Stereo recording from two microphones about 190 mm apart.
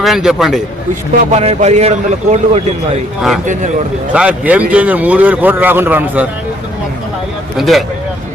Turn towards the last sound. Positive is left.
turn(degrees=0)  # may be behind; listen again after turning